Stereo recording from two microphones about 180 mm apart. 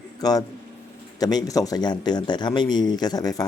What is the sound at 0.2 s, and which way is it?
A man's voice, 20° left (ahead or behind).